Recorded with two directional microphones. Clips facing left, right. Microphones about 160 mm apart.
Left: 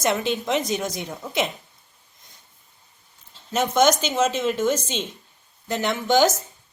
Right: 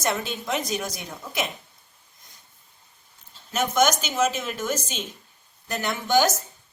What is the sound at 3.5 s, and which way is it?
A woman's voice, 25° left (ahead or behind).